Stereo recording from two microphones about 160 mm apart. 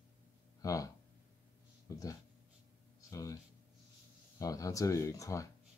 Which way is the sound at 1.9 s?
20° left (ahead or behind).